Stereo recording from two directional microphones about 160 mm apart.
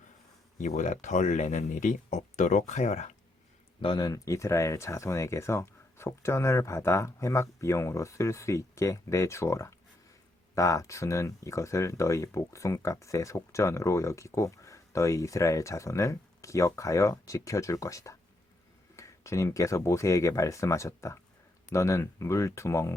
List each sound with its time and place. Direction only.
0.6 s speech: 50° left (ahead or behind)
3.8 s speech: 30° left (ahead or behind)